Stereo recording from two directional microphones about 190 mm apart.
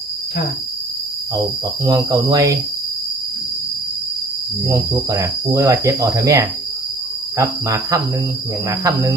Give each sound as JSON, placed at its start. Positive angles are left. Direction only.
{"t": 1.8, "sound": "cricket", "side_deg": -20}
{"t": 4.6, "sound": "cricket", "side_deg": -20}